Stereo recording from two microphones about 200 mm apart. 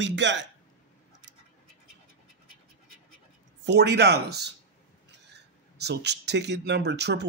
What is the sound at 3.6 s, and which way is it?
Speech, 55° right (ahead or behind).